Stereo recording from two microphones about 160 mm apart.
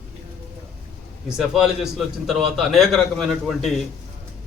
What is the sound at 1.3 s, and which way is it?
A man's voice, 5° right (ahead or behind).